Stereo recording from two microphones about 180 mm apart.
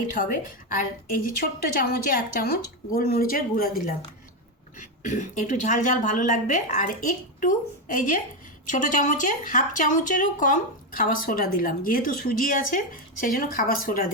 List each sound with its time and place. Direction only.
0.1 s a woman's voice: 45° left (ahead or behind)
4.8 s a woman's voice: 45° left (ahead or behind)